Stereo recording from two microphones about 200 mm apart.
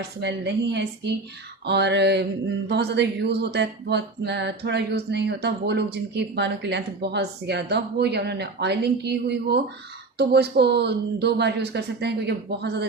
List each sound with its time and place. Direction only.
0.2 s speech: 60° right (ahead or behind)